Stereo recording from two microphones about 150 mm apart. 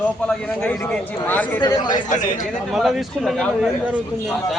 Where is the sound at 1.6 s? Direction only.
30° left (ahead or behind).